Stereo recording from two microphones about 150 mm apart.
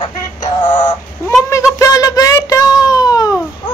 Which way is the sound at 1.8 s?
25° left (ahead or behind).